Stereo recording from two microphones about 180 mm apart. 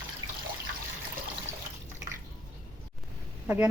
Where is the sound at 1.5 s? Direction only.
40° right (ahead or behind).